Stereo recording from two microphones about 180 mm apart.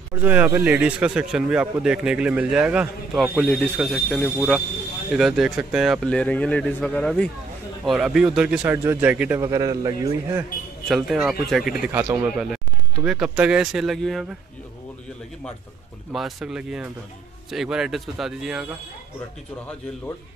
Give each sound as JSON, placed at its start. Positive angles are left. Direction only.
{"t": 0.2, "sound": "speech", "side_deg": -10}
{"t": 9.4, "sound": "a man's voice", "side_deg": -20}
{"t": 10.9, "sound": "speech", "side_deg": 0}
{"t": 16.1, "sound": "speech", "side_deg": 0}